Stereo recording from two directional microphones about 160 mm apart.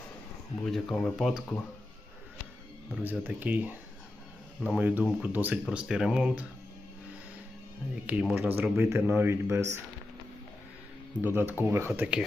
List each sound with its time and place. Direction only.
0.6 s speech: centre (ahead or behind)
2.9 s speech: 10° right (ahead or behind)
8.0 s speech: 5° right (ahead or behind)
11.2 s speech: 10° right (ahead or behind)